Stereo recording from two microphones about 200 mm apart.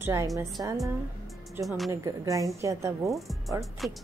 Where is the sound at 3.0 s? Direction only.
Centre (ahead or behind).